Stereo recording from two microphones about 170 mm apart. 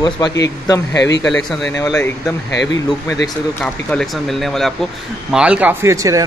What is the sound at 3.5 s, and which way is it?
Speech, 5° left (ahead or behind).